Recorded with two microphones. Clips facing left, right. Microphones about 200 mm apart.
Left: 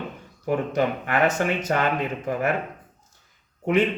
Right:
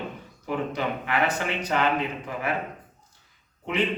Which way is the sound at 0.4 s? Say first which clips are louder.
Left 5 dB; 45° left (ahead or behind).